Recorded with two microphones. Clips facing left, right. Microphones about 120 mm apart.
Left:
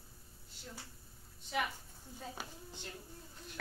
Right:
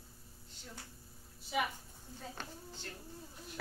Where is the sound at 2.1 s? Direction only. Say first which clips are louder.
Even; 15° left (ahead or behind).